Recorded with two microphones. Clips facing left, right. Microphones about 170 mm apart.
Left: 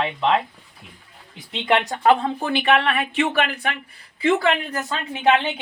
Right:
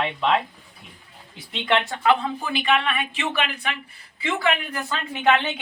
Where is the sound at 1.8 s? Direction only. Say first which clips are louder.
Left 3 dB; 40° left (ahead or behind); by 3.0 s 65° left (ahead or behind).